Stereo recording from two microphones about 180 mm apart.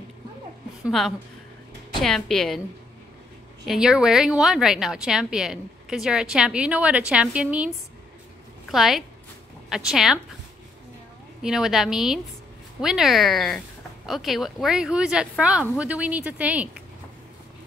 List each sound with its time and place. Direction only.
0.8 s a woman's voice: centre (ahead or behind)
3.6 s a woman's voice: 5° right (ahead or behind)
8.7 s a woman's voice: centre (ahead or behind)
11.4 s a woman's voice: 5° right (ahead or behind)